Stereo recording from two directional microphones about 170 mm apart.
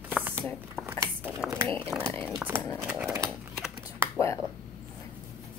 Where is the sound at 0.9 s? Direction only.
10° right (ahead or behind).